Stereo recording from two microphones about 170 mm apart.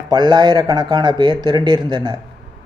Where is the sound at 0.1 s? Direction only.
25° right (ahead or behind).